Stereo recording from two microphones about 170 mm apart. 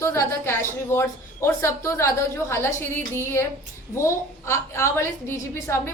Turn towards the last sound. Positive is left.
turn(degrees=15)  # may be behind; listen again after turning